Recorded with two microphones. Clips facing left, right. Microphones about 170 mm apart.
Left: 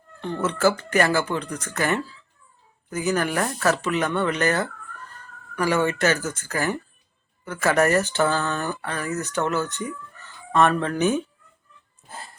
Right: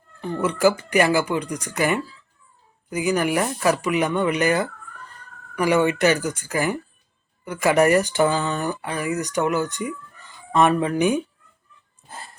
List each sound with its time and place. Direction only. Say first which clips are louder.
0.2 s speech: right 2 dB; 5° right (ahead or behind)